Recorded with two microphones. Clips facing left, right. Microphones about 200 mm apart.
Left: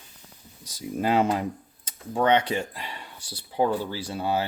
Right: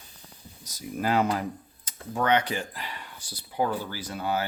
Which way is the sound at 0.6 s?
25° left (ahead or behind).